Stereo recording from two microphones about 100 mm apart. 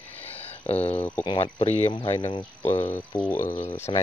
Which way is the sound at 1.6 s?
90° left.